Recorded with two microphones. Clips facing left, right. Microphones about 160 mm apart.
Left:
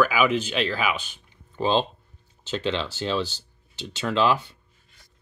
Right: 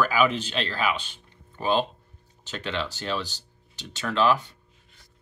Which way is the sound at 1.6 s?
25° left (ahead or behind).